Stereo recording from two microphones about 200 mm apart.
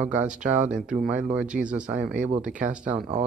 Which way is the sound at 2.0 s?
40° right (ahead or behind).